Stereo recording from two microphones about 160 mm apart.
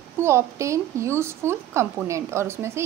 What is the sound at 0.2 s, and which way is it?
Speech, 15° right (ahead or behind).